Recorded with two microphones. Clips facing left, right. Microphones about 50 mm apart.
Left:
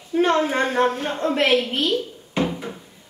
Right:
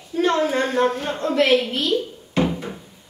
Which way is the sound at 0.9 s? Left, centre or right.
Centre.